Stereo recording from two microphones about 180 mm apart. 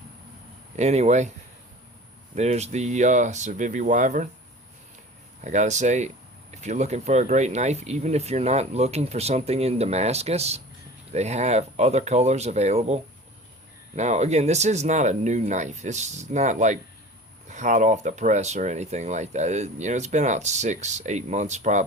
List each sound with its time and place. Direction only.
0.8 s speech: 40° right (ahead or behind)
2.3 s speech: 40° right (ahead or behind)
5.4 s speech: 40° right (ahead or behind)